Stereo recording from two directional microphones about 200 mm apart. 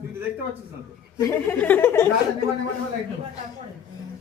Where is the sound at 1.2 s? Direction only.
10° left (ahead or behind).